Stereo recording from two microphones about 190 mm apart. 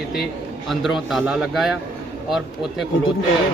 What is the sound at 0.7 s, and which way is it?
A man's voice, centre (ahead or behind).